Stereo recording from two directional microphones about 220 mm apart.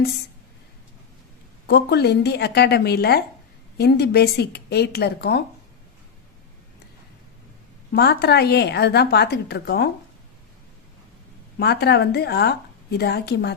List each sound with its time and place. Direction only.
1.6 s a woman's voice: 50° left (ahead or behind)
7.9 s a woman's voice: 45° left (ahead or behind)
11.6 s a woman's voice: 45° left (ahead or behind)